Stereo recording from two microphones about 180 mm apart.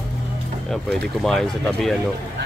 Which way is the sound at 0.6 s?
Centre (ahead or behind).